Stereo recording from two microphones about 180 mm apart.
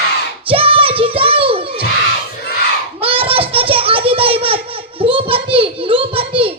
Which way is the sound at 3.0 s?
30° right (ahead or behind).